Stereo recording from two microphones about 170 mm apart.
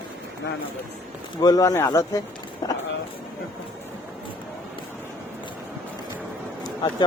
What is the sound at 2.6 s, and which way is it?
Vehicle, 25° left (ahead or behind).